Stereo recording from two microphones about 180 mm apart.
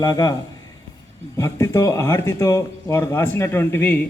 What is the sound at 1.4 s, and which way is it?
A man's voice, 15° left (ahead or behind).